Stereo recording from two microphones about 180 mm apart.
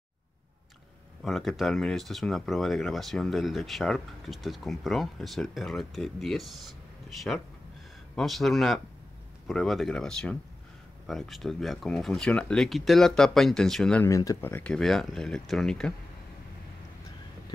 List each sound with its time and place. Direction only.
1.2 s speech: centre (ahead or behind)
14.0 s speech: 20° left (ahead or behind)